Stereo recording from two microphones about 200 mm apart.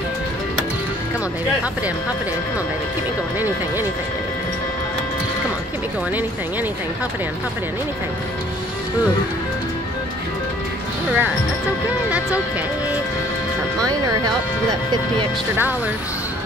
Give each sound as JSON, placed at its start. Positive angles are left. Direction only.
{"t": 11.1, "sound": "speech", "side_deg": -5}
{"t": 13.8, "sound": "speech", "side_deg": -20}